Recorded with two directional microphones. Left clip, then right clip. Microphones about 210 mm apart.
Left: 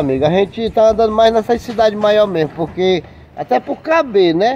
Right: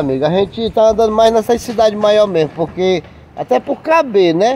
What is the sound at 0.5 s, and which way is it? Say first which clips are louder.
Speech: even; 15° right (ahead or behind).